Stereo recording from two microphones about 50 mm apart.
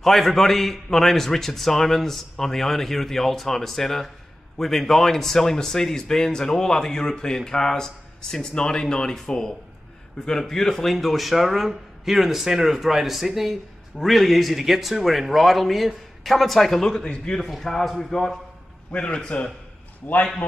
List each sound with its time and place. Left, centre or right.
0.0 s a man's voice: centre
17.5 s a man's voice: centre
18.9 s a man's voice: left